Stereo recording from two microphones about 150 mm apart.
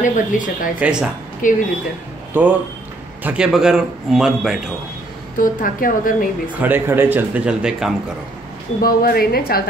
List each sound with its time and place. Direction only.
0.0 s a woman's voice: 60° left (ahead or behind)
0.7 s a man's voice: 5° right (ahead or behind)
1.4 s a woman's voice: 60° left (ahead or behind)
2.3 s a man's voice: 10° right (ahead or behind)
5.4 s a woman's voice: 65° left (ahead or behind)
6.6 s a man's voice: 15° right (ahead or behind)
8.8 s speech: 85° left